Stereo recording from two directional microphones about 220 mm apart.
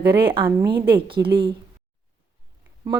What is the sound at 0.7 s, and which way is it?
Speech, 45° right (ahead or behind).